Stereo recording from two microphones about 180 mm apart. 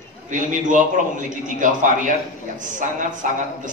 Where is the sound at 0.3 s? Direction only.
45° right (ahead or behind).